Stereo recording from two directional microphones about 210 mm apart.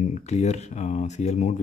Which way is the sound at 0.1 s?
35° left (ahead or behind).